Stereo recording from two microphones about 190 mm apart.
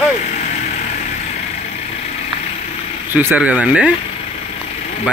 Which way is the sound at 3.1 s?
10° right (ahead or behind).